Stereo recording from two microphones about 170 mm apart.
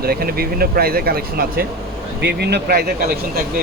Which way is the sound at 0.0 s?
65° right (ahead or behind).